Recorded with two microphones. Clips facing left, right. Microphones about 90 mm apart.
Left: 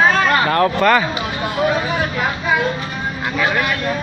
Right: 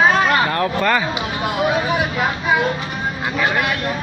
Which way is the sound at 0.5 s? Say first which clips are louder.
Left 4 dB; 80° left.